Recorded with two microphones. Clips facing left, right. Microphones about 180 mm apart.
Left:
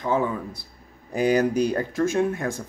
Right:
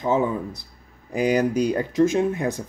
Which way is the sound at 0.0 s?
20° right (ahead or behind).